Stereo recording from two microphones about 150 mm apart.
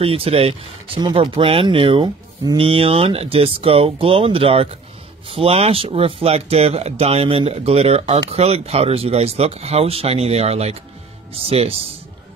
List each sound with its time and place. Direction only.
0.0 s speech: 40° right (ahead or behind)